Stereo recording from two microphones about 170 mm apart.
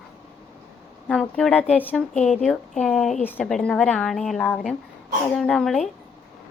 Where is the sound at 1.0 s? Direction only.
5° left (ahead or behind).